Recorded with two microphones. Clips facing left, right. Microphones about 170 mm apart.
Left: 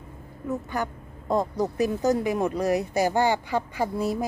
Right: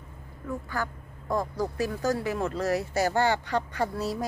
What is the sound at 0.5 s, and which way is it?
Speech, 20° left (ahead or behind).